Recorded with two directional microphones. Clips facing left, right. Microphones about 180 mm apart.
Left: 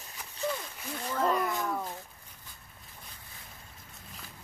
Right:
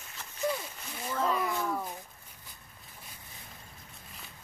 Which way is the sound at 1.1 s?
Centre (ahead or behind).